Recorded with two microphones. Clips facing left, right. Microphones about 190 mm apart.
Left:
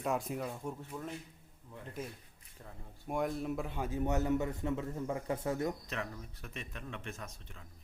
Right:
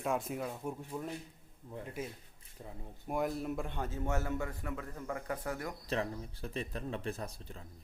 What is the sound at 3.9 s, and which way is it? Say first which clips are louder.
A man's voice: left 6 dB; 15° left (ahead or behind).